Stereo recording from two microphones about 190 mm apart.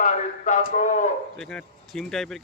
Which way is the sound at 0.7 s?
40° left (ahead or behind).